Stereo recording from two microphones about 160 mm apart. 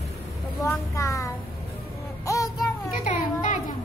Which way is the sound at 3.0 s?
50° left (ahead or behind).